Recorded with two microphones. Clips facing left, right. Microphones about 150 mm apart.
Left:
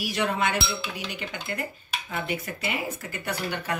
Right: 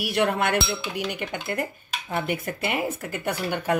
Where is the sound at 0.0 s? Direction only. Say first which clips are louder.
Right 3 dB; 60° right (ahead or behind).